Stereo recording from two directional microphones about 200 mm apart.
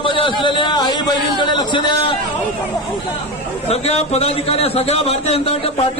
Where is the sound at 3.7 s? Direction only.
30° left (ahead or behind).